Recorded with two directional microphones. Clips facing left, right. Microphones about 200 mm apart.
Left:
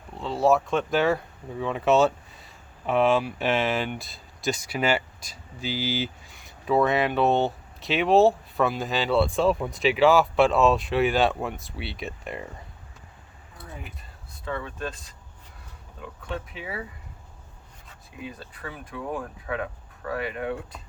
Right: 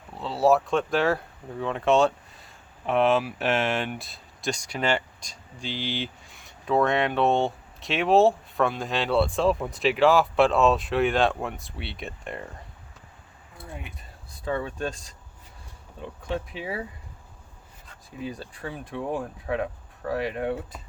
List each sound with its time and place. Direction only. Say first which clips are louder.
0.2 s speech: even; centre (ahead or behind)
14.4 s speech: right 3 dB; 35° right (ahead or behind)
16.0 s speech: right 3 dB; 30° right (ahead or behind)
17.8 s speech: right 4 dB; centre (ahead or behind)
18.6 s speech: right 3 dB; 30° right (ahead or behind)